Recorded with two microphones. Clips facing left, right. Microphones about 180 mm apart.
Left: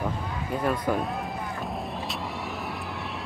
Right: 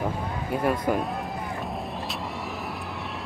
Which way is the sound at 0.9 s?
10° right (ahead or behind).